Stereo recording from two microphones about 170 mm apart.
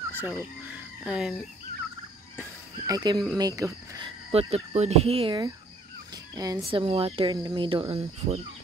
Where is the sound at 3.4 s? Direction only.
20° right (ahead or behind).